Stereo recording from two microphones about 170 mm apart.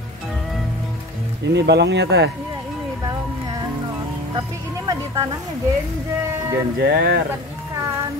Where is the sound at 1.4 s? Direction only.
85° right.